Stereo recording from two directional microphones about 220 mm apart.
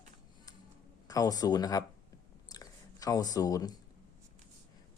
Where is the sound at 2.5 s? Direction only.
15° left (ahead or behind).